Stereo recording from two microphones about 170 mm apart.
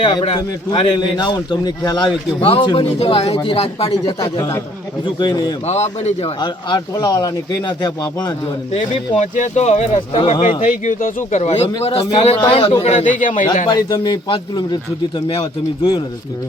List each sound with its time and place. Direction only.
0.0 s a man's voice: 30° left (ahead or behind)
4.0 s speech: 20° left (ahead or behind)
5.6 s a man's voice: 40° left (ahead or behind)
6.4 s speech: 25° left (ahead or behind)
8.7 s a man's voice: 45° left (ahead or behind)
10.8 s a man's voice: 50° left (ahead or behind)
13.7 s a man's voice: 25° left (ahead or behind)